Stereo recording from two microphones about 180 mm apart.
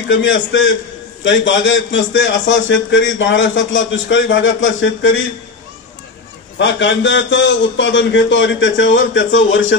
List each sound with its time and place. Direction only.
0.1 s a man's voice: 90° left
6.6 s a man's voice: 90° left